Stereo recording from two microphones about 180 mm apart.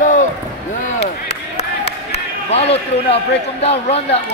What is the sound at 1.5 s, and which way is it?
A man's voice, 35° left (ahead or behind).